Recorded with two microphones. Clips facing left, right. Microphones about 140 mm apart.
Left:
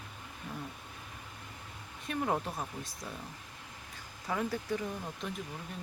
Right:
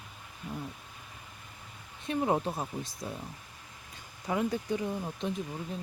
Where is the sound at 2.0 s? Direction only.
25° right (ahead or behind).